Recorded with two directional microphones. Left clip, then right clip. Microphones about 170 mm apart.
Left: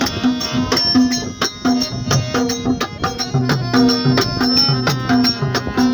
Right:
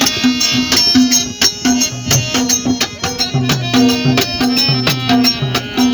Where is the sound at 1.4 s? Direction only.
30° left (ahead or behind).